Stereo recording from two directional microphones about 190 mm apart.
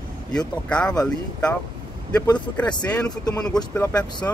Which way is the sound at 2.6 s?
5° left (ahead or behind).